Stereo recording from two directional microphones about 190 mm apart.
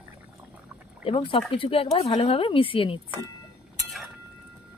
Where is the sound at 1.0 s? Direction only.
30° left (ahead or behind).